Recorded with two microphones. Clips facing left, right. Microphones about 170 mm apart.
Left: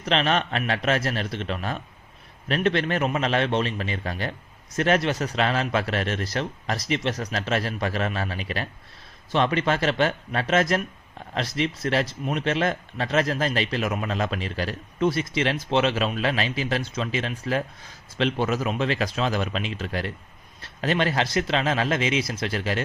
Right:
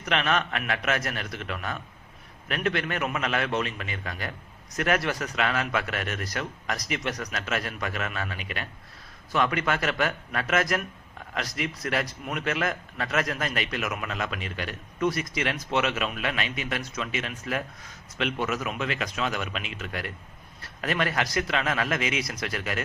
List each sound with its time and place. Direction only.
0.0 s a man's voice: 30° left (ahead or behind)